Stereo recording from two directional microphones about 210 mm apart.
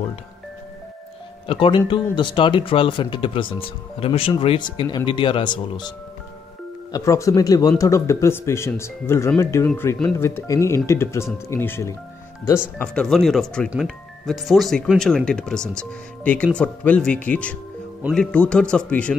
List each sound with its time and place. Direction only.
1.5 s speech: 25° left (ahead or behind); by 19.1 s 5° left (ahead or behind)